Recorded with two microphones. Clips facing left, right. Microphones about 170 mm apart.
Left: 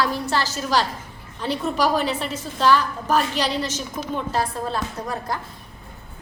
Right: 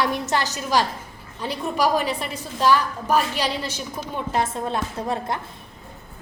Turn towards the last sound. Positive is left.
turn(degrees=-25)  # may be behind; listen again after turning